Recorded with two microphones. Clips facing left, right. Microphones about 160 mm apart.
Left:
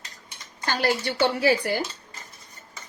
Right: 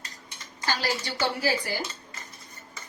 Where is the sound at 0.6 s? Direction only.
55° left (ahead or behind).